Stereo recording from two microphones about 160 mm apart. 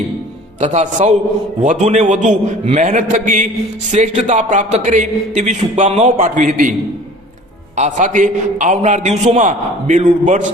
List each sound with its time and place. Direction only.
0.6 s a man's voice: 50° right (ahead or behind)
7.8 s a man's voice: 50° right (ahead or behind)